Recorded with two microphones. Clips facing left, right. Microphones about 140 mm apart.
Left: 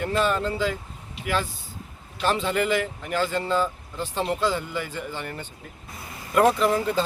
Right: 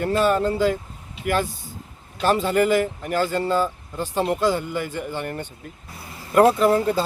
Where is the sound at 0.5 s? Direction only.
45° right (ahead or behind).